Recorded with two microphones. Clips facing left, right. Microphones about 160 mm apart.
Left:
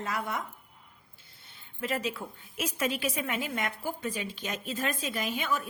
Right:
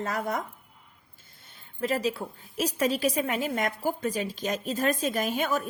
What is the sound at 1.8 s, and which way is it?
A woman's voice, 35° right (ahead or behind).